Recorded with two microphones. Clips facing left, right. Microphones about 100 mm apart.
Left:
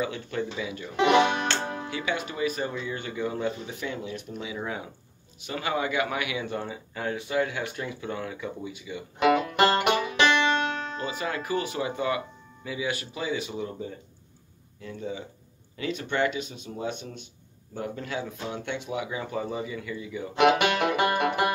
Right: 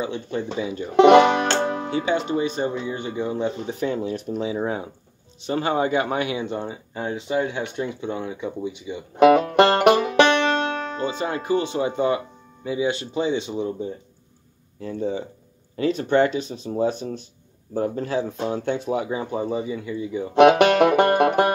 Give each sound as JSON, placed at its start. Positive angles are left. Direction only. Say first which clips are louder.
{"t": 0.0, "sound": "speech", "louder": "right 3 dB", "side_deg": -25}
{"t": 0.9, "sound": "speech", "louder": "right 9 dB", "side_deg": -65}
{"t": 1.6, "sound": "music", "louder": "right 9 dB", "side_deg": -65}
{"t": 1.9, "sound": "speech", "louder": "right 8 dB", "side_deg": -30}
{"t": 9.1, "sound": "music", "louder": "right 8 dB", "side_deg": -45}
{"t": 9.8, "sound": "banjo", "louder": "right 9 dB", "side_deg": -50}
{"t": 10.7, "sound": "music", "louder": "right 5 dB", "side_deg": -50}
{"t": 11.0, "sound": "speech", "louder": "right 5 dB", "side_deg": -30}
{"t": 20.3, "sound": "music", "louder": "right 8 dB", "side_deg": -40}